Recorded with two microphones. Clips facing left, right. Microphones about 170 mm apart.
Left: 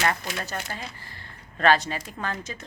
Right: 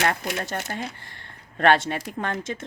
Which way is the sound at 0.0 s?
50° right (ahead or behind).